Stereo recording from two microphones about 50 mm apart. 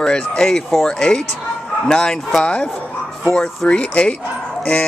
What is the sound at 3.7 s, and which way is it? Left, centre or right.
Speech, left.